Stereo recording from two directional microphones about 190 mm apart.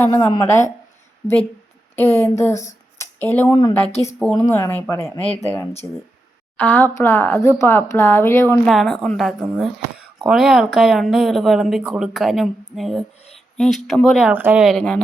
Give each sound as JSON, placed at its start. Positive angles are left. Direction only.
{"t": 0.0, "sound": "speech", "side_deg": 10}
{"t": 2.0, "sound": "speech", "side_deg": 10}
{"t": 3.0, "sound": "a sound", "side_deg": 10}
{"t": 3.6, "sound": "a woman's voice", "side_deg": 25}
{"t": 4.4, "sound": "speech", "side_deg": 15}
{"t": 8.6, "sound": "speech", "side_deg": 0}